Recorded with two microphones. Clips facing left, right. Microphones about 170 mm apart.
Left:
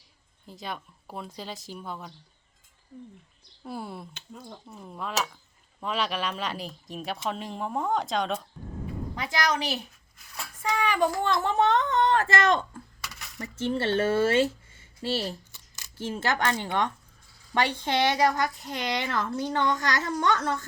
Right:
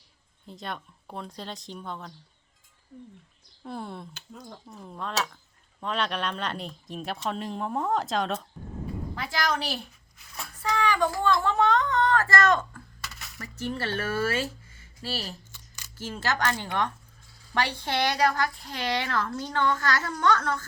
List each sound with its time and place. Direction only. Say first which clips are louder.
0.4 s speech: even; centre (ahead or behind)
3.6 s speech: even; 5° left (ahead or behind)
10.3 s a sound: even; 5° left (ahead or behind)
10.8 s a woman's voice: right 1 dB; 20° left (ahead or behind)